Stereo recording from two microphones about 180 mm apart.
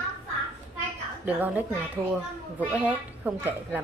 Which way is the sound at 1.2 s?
10° right (ahead or behind).